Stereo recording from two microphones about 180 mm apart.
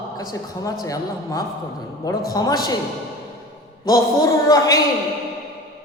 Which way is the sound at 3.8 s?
20° left (ahead or behind).